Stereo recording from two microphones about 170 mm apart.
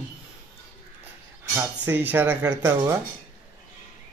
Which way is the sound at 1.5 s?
10° right (ahead or behind).